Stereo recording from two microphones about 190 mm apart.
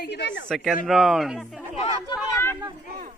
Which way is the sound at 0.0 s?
65° left (ahead or behind).